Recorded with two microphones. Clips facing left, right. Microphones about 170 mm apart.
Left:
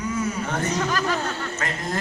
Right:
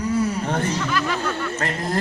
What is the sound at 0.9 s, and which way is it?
Speech, 40° left (ahead or behind).